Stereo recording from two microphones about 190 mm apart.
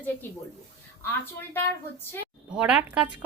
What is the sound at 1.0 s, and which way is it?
Speech, 10° left (ahead or behind).